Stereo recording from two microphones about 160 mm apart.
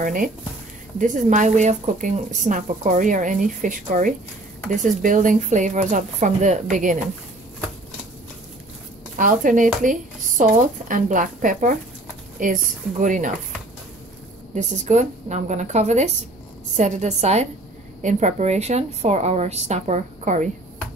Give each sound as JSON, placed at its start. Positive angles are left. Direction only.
{"t": 0.0, "sound": "a woman's voice", "side_deg": -55}
{"t": 9.2, "sound": "a woman's voice", "side_deg": -55}
{"t": 14.5, "sound": "a woman's voice", "side_deg": -50}